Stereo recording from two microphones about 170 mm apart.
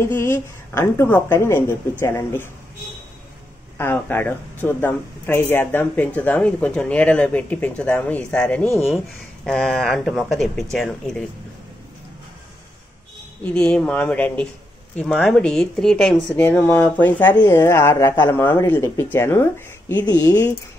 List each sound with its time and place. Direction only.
0.0 s speech: 15° left (ahead or behind)
3.7 s speech: 15° left (ahead or behind)
13.4 s speech: 10° left (ahead or behind)